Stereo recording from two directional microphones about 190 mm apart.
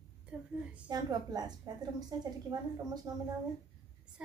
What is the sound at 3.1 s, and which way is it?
Speech, 20° right (ahead or behind).